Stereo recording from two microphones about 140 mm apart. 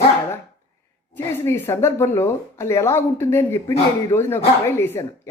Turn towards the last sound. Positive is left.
turn(degrees=15)  # may be behind; listen again after turning